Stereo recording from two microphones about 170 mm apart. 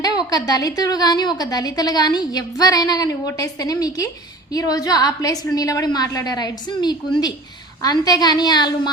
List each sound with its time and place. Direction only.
0.0 s a woman's voice: 20° left (ahead or behind)